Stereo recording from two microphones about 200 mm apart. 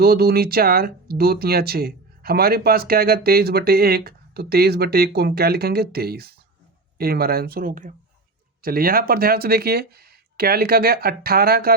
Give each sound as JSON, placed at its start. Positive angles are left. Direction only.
{"t": 0.0, "sound": "speech", "side_deg": -50}